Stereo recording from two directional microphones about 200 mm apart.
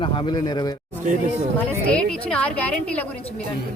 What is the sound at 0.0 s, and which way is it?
Speech, 25° left (ahead or behind).